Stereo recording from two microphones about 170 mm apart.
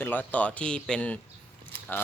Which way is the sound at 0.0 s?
10° left (ahead or behind).